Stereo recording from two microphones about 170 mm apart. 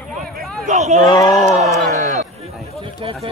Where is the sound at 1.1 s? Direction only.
20° left (ahead or behind).